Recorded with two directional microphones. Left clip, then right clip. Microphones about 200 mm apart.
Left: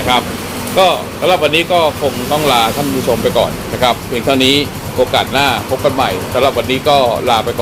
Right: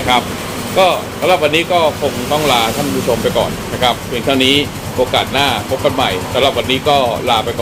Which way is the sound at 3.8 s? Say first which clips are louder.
Left 1 dB; 10° left (ahead or behind).